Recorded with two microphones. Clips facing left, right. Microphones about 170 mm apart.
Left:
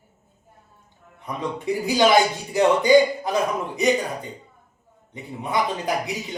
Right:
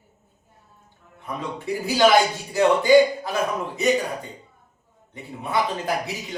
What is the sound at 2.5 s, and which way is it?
Speech, 20° left (ahead or behind).